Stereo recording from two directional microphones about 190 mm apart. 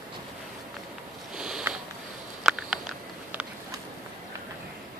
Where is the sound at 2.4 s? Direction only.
Centre (ahead or behind).